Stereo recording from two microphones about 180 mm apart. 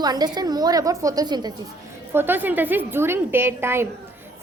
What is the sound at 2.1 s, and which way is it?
A woman's voice, 10° right (ahead or behind).